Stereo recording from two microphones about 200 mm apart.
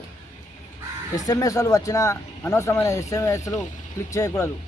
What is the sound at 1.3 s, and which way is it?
A man's voice, 15° left (ahead or behind).